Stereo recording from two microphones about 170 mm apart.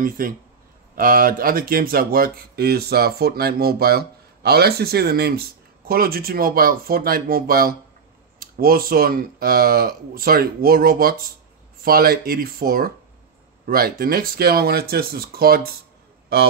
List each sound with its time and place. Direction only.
0.2 s speech: 55° right (ahead or behind)